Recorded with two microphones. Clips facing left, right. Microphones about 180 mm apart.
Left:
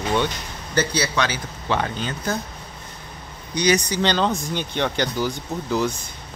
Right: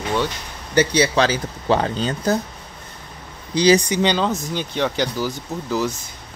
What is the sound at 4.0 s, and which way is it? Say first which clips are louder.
Speech: right 1 dB; 5° right (ahead or behind).